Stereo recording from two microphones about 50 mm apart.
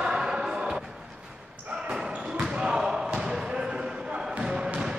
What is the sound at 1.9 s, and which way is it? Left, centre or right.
Basketball bounce, centre.